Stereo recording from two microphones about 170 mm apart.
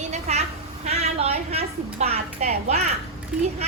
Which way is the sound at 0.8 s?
35° right (ahead or behind).